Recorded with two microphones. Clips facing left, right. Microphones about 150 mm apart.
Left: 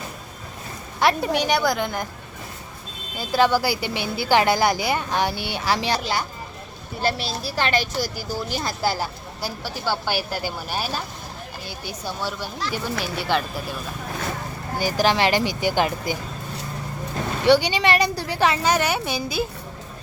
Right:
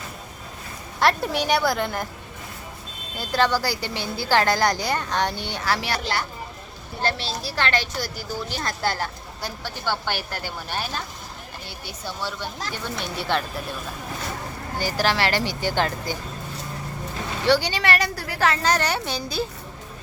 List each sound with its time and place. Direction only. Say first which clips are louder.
0.9 s a woman's voice: left 1 dB; centre (ahead or behind)
3.2 s a woman's voice: left 3 dB; 10° left (ahead or behind)
12.7 s a woman's voice: left 5 dB; centre (ahead or behind)
14.8 s a woman's voice: left 3 dB; 15° left (ahead or behind)
17.4 s a woman's voice: left 3 dB; 15° left (ahead or behind)